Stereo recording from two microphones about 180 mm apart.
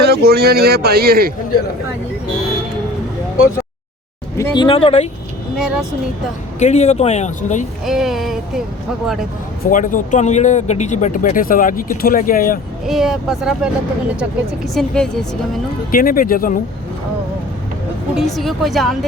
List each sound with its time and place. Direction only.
0.0 s speech: 60° right (ahead or behind)
4.4 s speech: 20° left (ahead or behind)
5.5 s speech: 5° right (ahead or behind)
6.6 s speech: 40° left (ahead or behind)
7.9 s speech: centre (ahead or behind)
9.6 s speech: 50° left (ahead or behind)
12.8 s speech: centre (ahead or behind)
14.7 s speech: 5° left (ahead or behind)
15.9 s speech: 50° left (ahead or behind)
18.2 s speech: centre (ahead or behind)